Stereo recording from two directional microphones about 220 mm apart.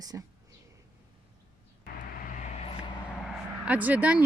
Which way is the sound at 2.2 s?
35° left (ahead or behind).